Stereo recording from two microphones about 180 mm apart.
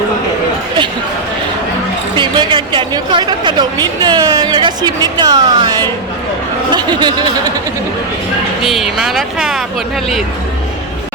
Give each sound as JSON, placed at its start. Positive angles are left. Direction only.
{"t": 2.1, "sound": "a woman's voice", "side_deg": -25}
{"t": 8.6, "sound": "speech", "side_deg": 0}